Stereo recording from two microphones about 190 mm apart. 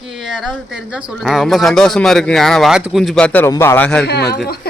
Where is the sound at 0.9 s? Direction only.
Centre (ahead or behind).